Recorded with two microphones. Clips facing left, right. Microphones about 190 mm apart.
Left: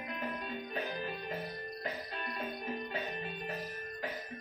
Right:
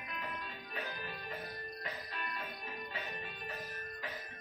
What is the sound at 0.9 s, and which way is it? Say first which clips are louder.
Music: left 6 dB; 25° left (ahead or behind).